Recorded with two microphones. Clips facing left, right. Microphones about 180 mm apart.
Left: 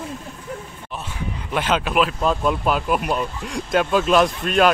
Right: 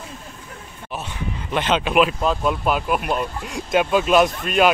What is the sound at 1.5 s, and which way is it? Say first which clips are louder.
Speech: right 1 dB; 5° left (ahead or behind).